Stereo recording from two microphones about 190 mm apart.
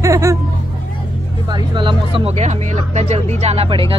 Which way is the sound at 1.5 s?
25° right (ahead or behind).